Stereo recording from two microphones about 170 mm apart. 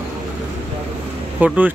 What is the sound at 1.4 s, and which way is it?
Speech, 10° right (ahead or behind).